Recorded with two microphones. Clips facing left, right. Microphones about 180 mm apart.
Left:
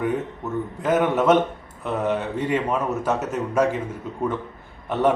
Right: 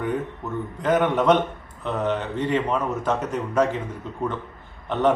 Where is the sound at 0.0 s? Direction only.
10° left (ahead or behind).